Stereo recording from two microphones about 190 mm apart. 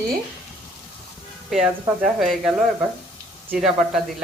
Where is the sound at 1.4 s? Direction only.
5° right (ahead or behind).